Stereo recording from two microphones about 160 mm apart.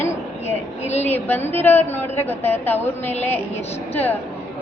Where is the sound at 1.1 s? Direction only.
10° left (ahead or behind).